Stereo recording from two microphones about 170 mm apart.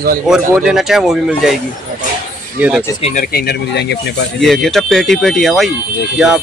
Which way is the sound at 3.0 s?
45° left (ahead or behind).